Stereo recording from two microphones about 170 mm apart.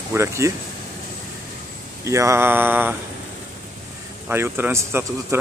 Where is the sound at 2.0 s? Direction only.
15° right (ahead or behind).